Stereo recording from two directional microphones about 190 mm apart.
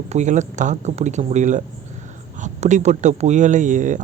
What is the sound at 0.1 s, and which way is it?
A man's voice, 40° right (ahead or behind).